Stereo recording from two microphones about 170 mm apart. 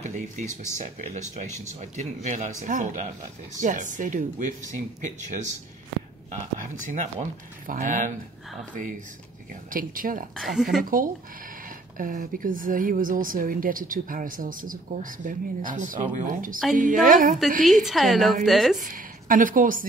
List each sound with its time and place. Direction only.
0.0 s speech: 45° right (ahead or behind)
6.9 s speech: 50° right (ahead or behind)
9.5 s speech: 55° right (ahead or behind)
10.3 s a woman's voice: centre (ahead or behind)
10.8 s speech: 55° right (ahead or behind)
17.8 s a woman's voice: centre (ahead or behind)
18.8 s a woman's voice: 55° right (ahead or behind)